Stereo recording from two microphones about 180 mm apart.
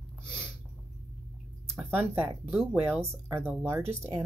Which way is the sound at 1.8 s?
10° right (ahead or behind).